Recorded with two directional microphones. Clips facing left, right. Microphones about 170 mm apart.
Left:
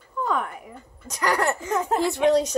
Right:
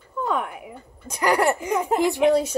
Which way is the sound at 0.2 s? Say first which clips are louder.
Right 1 dB; 5° right (ahead or behind).